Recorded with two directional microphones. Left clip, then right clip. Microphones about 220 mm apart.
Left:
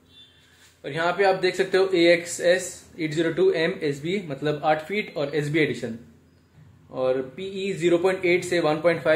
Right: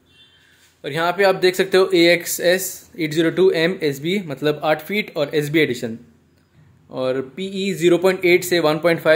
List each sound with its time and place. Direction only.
0.8 s speech: 50° right (ahead or behind)
6.9 s speech: 50° right (ahead or behind)